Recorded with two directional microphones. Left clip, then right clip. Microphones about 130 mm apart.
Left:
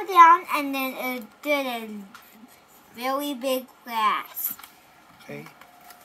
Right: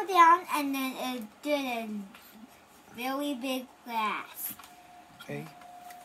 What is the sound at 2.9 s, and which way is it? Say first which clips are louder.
A woman's voice: left 6 dB; 20° left (ahead or behind).